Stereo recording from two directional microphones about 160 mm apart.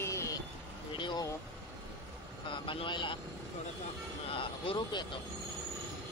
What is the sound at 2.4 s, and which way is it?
Speech, 30° left (ahead or behind).